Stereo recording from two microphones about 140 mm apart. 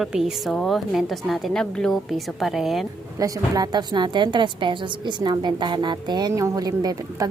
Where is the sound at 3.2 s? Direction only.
25° right (ahead or behind).